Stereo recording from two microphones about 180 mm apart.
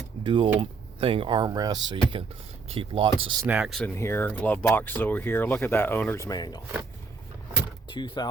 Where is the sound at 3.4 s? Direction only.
5° right (ahead or behind).